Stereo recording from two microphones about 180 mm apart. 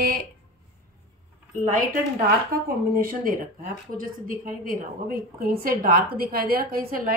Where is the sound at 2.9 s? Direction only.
50° right (ahead or behind).